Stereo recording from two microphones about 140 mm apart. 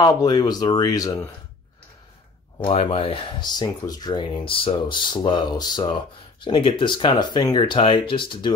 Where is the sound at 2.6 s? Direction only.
45° left (ahead or behind).